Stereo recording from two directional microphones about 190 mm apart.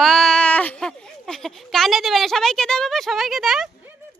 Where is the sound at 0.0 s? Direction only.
Centre (ahead or behind).